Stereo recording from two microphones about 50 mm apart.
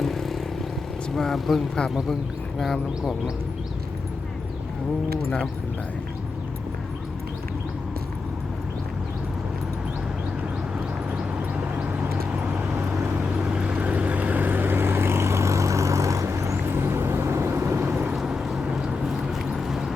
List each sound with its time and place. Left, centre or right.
0.0 s vehicle: centre
1.1 s speech: centre
2.7 s speech: centre
11.2 s a sound: right
12.3 s vehicle: right
12.7 s vehicle: right
13.3 s vehicle: right
16.6 s vehicle: right
18.1 s a sound: centre